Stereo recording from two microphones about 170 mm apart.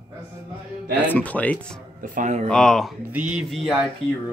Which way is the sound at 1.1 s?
10° left (ahead or behind).